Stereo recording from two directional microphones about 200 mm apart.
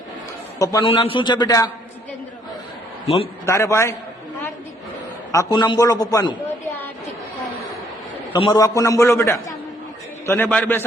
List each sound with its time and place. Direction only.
0.6 s a man's voice: 15° left (ahead or behind)
3.4 s a man's voice: 15° left (ahead or behind)
5.3 s a man's voice: 20° left (ahead or behind)
8.4 s a man's voice: 20° left (ahead or behind)